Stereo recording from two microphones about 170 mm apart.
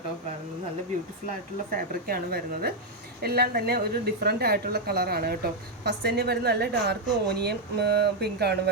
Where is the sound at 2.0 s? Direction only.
65° right (ahead or behind).